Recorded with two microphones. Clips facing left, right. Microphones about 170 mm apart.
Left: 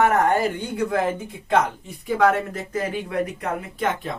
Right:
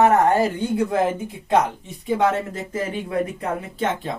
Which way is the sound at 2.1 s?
25° right (ahead or behind).